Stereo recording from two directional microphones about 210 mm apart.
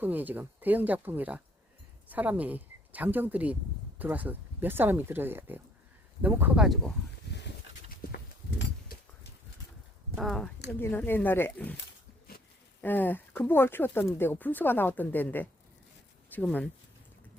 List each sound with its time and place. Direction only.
0.0 s speech: 10° right (ahead or behind)
7.3 s a sound: 50° left (ahead or behind)
10.2 s speech: centre (ahead or behind)
12.8 s speech: 10° left (ahead or behind)